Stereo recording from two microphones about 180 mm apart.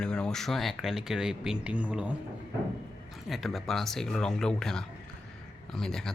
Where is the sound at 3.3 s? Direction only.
Centre (ahead or behind).